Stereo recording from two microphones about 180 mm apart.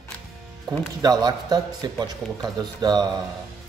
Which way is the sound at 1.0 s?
20° right (ahead or behind).